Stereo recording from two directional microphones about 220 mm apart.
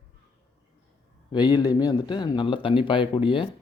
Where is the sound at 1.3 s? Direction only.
20° left (ahead or behind).